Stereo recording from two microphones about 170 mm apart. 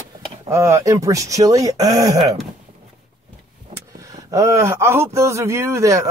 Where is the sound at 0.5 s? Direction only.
15° right (ahead or behind).